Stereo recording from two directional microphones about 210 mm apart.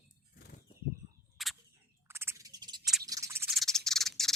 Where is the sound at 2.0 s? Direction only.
10° right (ahead or behind).